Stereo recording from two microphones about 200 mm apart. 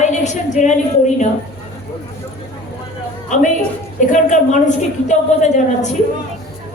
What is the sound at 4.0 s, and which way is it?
A woman's voice, 40° left (ahead or behind).